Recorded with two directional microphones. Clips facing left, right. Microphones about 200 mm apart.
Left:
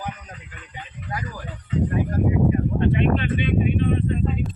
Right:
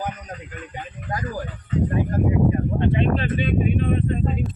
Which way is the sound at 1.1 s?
40° right (ahead or behind).